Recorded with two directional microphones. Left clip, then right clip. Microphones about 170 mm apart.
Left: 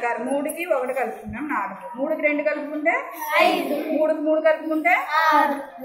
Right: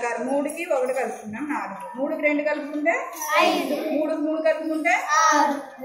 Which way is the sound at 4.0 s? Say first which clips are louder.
Left 7 dB; centre (ahead or behind).